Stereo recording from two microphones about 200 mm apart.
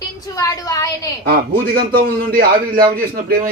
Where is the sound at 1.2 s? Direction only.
50° right (ahead or behind).